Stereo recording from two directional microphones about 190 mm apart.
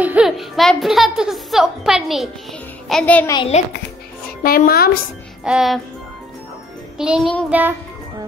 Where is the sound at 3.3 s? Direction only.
30° left (ahead or behind).